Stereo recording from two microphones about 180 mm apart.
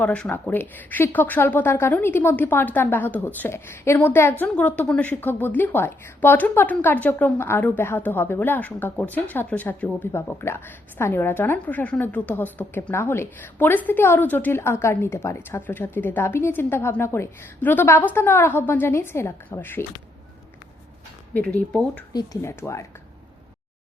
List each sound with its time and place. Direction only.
0.0 s a woman's voice: 5° left (ahead or behind)
21.3 s speech: 5° left (ahead or behind)
22.1 s a woman's voice: 20° left (ahead or behind)